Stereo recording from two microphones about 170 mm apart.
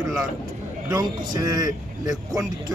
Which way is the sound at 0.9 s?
25° right (ahead or behind).